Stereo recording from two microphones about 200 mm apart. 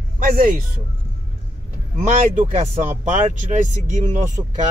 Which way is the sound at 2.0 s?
30° right (ahead or behind).